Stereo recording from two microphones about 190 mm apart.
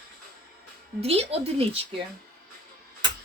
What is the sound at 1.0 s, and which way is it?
Speech, 30° right (ahead or behind).